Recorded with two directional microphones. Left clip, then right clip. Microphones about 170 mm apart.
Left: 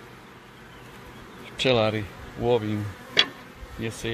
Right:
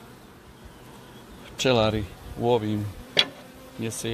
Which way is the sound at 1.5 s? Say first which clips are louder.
Even; 25° right (ahead or behind).